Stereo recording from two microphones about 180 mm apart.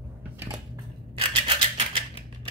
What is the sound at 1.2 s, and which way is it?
Scissors, 30° right (ahead or behind).